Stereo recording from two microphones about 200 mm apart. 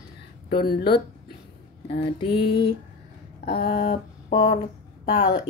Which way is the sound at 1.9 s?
25° left (ahead or behind).